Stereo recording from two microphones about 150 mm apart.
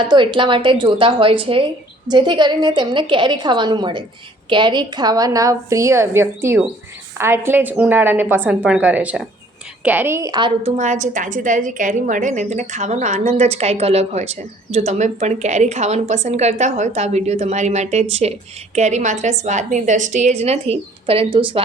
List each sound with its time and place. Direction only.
0.0 s a woman's voice: 30° right (ahead or behind)
10.8 s a woman's voice: 55° right (ahead or behind); by 21.6 s 35° right (ahead or behind)